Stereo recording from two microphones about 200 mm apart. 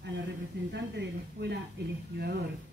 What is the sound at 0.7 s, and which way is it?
Speech, 60° right (ahead or behind).